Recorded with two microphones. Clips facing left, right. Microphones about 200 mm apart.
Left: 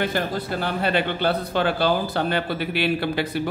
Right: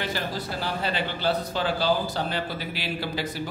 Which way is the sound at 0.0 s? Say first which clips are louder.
Left 6 dB; 55° left (ahead or behind).